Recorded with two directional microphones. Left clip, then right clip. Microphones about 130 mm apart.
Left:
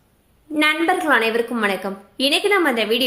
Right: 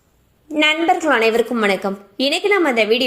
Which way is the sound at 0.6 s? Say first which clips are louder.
Right 2 dB; 20° right (ahead or behind).